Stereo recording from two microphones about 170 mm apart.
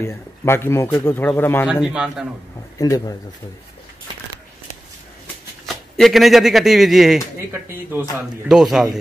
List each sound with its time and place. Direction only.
0.0 s speech: 15° left (ahead or behind)
1.7 s a man's voice: 5° right (ahead or behind)
2.8 s speech: 20° left (ahead or behind)
5.9 s a man's voice: centre (ahead or behind)
7.5 s speech: 15° right (ahead or behind)
8.5 s a man's voice: 5° right (ahead or behind)